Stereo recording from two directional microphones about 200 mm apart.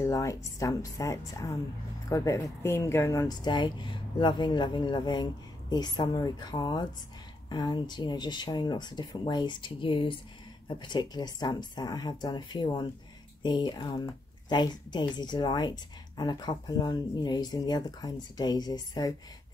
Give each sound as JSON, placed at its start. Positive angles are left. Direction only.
{"t": 0.0, "sound": "a woman's voice", "side_deg": 15}